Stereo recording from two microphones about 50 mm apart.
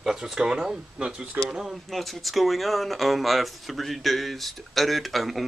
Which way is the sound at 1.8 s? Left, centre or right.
Centre.